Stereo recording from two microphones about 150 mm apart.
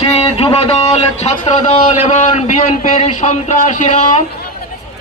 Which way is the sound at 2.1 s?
55° left (ahead or behind).